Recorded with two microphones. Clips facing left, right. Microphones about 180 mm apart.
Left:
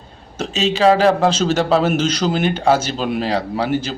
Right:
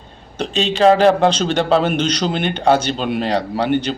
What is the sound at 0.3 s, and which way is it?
A man's voice, 5° left (ahead or behind).